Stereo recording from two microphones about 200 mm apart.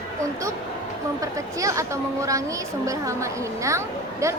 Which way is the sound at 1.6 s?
15° right (ahead or behind).